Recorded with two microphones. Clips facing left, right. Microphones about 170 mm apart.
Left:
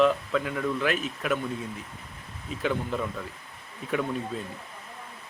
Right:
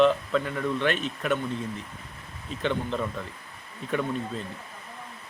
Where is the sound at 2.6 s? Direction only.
5° left (ahead or behind).